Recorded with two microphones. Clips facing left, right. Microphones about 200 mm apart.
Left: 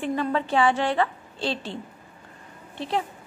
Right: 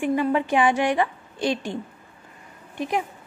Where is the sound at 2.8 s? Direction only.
15° right (ahead or behind).